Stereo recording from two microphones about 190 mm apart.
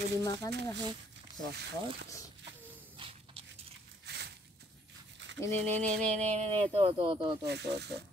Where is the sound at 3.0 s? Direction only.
30° right (ahead or behind).